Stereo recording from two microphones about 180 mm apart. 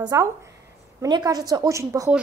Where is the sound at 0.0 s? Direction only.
20° right (ahead or behind).